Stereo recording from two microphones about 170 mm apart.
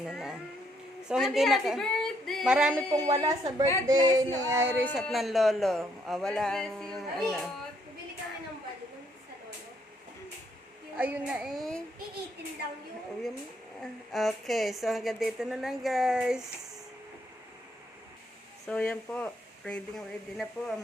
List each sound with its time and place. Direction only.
0.0 s speech: 5° right (ahead or behind)
2.9 s speech: 20° right (ahead or behind)
4.9 s speech: centre (ahead or behind)
10.9 s speech: 10° right (ahead or behind)
14.1 s speech: centre (ahead or behind)
18.6 s speech: 5° left (ahead or behind)